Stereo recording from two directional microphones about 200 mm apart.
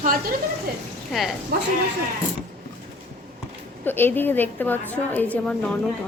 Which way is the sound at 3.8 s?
10° left (ahead or behind).